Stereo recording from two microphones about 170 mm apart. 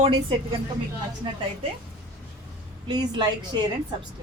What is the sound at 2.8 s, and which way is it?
Speech, 25° right (ahead or behind).